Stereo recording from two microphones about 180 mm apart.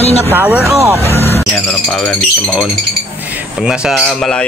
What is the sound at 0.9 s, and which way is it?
Speech, 35° right (ahead or behind).